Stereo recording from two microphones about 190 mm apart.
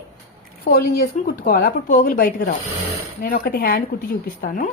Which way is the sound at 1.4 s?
50° left (ahead or behind).